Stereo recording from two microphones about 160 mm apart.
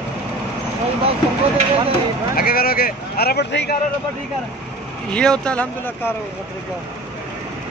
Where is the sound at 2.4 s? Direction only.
70° left (ahead or behind); by 3.7 s 85° left.